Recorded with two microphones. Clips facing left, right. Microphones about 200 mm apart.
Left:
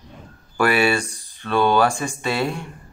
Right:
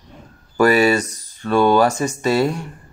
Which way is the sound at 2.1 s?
40° right (ahead or behind).